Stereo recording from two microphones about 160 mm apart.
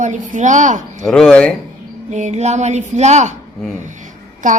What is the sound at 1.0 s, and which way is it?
Speech, 5° left (ahead or behind).